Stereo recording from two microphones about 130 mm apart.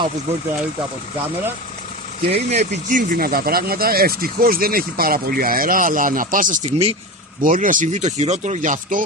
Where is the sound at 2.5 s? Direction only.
90° right.